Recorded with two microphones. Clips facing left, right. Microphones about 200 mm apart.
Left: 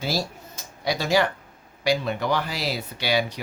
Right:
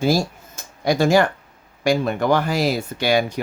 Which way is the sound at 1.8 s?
50° right (ahead or behind).